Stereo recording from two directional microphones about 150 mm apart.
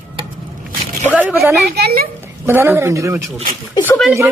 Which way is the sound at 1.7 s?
90° right.